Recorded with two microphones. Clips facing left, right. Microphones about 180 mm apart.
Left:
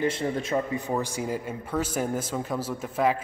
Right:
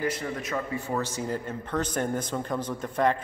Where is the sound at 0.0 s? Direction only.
25° left (ahead or behind).